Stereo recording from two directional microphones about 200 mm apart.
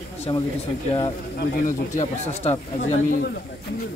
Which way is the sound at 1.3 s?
40° left (ahead or behind).